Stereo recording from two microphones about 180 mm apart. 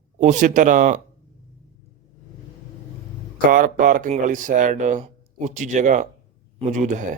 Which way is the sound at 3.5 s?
50° right (ahead or behind).